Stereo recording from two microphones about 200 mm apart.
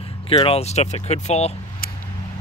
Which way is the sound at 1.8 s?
45° left (ahead or behind).